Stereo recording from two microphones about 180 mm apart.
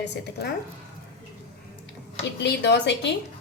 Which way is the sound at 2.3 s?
70° left (ahead or behind).